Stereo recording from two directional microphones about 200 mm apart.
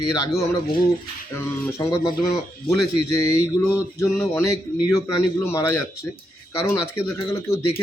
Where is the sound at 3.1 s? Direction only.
15° left (ahead or behind).